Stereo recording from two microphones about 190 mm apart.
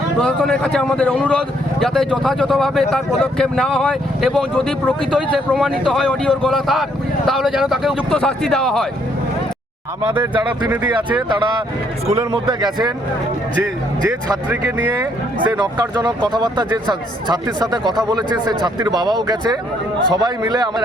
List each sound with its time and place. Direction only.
0.2 s a man's voice: 5° left (ahead or behind)
12.0 s a man's voice: 30° right (ahead or behind)
15.5 s a man's voice: 20° right (ahead or behind)